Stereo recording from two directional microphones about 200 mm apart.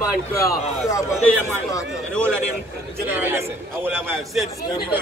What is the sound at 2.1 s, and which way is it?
Speech, 5° left (ahead or behind).